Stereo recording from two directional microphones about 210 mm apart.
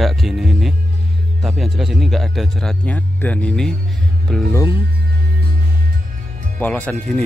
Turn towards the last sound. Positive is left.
turn(degrees=5)  # may be behind; listen again after turning